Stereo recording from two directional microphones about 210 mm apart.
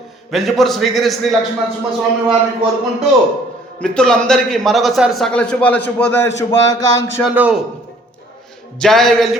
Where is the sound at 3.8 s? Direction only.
5° left (ahead or behind).